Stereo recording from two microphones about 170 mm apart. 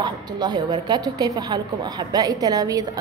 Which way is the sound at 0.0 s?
25° right (ahead or behind).